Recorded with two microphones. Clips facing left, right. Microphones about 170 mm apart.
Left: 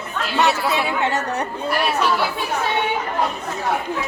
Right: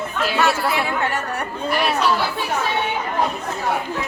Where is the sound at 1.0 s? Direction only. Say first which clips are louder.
Left 2 dB; 20° left (ahead or behind).